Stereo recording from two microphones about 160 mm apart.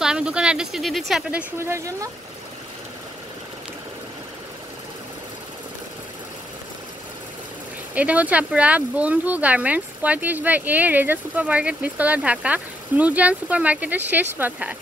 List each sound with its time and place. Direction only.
0.0 s speech: 5° right (ahead or behind)
1.6 s speech: 20° right (ahead or behind)
7.9 s speech: 10° right (ahead or behind)